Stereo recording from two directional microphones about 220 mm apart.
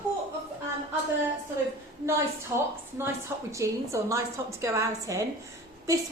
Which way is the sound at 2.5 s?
10° right (ahead or behind).